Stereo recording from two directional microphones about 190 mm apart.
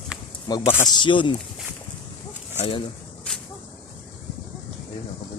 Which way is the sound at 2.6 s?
30° left (ahead or behind).